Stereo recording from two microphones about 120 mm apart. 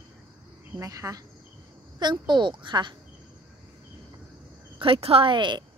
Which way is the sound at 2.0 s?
40° right (ahead or behind).